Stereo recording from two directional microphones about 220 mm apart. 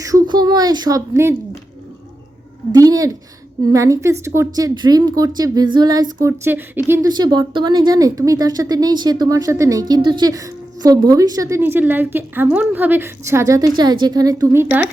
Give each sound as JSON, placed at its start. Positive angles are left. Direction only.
{"t": 0.0, "sound": "a woman's voice", "side_deg": -15}
{"t": 2.7, "sound": "a woman's voice", "side_deg": -15}